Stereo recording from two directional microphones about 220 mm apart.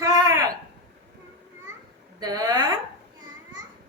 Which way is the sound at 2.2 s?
20° right (ahead or behind).